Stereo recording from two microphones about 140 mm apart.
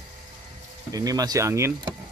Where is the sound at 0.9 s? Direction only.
25° right (ahead or behind).